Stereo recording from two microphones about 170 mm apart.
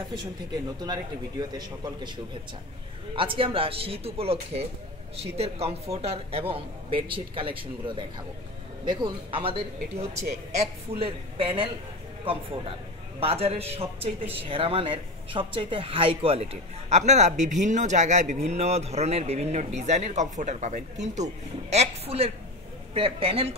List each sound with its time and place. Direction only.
0.7 s speech: 25° right (ahead or behind)
3.2 s speech: 30° right (ahead or behind)
13.2 s speech: 35° right (ahead or behind)